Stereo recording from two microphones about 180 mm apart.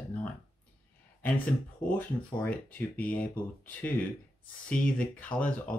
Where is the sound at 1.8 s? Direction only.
55° left (ahead or behind).